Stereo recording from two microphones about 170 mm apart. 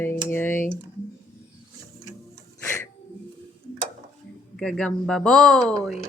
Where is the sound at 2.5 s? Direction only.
15° left (ahead or behind).